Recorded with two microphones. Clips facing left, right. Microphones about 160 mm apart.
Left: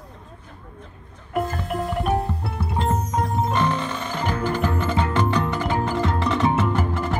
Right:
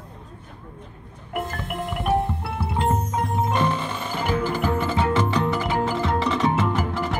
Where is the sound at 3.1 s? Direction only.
10° right (ahead or behind).